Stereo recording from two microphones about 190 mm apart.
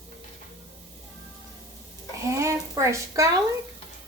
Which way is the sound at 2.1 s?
15° right (ahead or behind).